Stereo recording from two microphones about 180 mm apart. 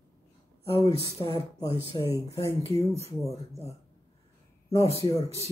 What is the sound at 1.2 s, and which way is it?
Speech, 25° left (ahead or behind).